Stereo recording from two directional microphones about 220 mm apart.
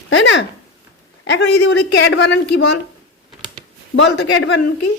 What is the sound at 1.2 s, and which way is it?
Speech, 55° left (ahead or behind).